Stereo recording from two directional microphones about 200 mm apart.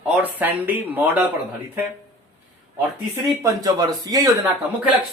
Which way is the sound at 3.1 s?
15° right (ahead or behind).